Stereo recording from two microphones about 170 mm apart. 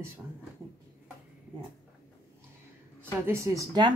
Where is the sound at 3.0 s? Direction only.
15° right (ahead or behind).